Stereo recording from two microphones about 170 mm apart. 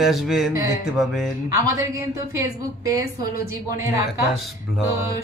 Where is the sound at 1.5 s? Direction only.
20° right (ahead or behind).